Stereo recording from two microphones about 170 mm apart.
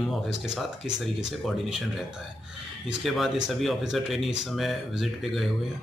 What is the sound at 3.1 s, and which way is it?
Speech, centre (ahead or behind).